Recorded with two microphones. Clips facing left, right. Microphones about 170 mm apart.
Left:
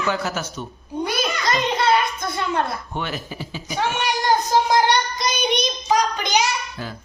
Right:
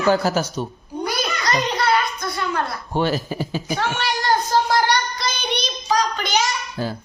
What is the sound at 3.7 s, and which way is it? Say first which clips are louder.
Child singing: left 2 dB; 15° left (ahead or behind).